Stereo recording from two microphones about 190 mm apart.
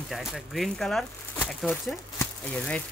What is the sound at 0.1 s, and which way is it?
A woman's voice, centre (ahead or behind).